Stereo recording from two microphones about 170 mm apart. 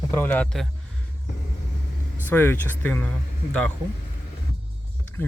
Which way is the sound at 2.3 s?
10° left (ahead or behind).